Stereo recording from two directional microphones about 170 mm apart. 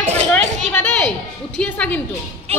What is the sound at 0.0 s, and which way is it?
Children playing, 40° right (ahead or behind).